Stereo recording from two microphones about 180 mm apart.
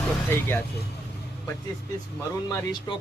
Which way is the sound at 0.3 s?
10° left (ahead or behind).